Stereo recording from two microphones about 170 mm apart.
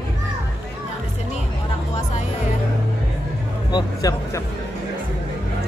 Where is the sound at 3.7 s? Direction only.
20° left (ahead or behind).